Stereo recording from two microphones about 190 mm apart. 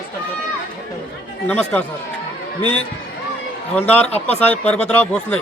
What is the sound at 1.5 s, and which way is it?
Speech, 10° left (ahead or behind).